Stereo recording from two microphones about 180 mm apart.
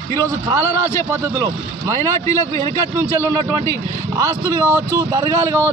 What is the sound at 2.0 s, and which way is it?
A man's voice, 20° left (ahead or behind).